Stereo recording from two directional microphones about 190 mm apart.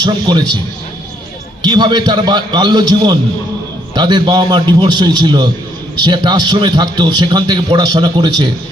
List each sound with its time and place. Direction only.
0.0 s a man's voice: 25° right (ahead or behind)
1.6 s a man's voice: 25° right (ahead or behind)